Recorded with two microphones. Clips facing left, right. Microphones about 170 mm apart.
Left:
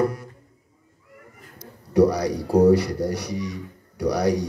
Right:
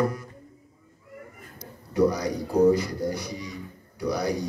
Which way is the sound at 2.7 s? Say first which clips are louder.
Left 4 dB; 75° left (ahead or behind).